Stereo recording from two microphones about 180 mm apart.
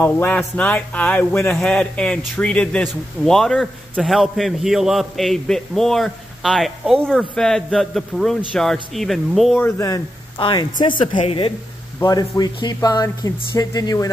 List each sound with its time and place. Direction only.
0.0 s speech: 10° left (ahead or behind)
9.6 s a woman's voice: 15° left (ahead or behind)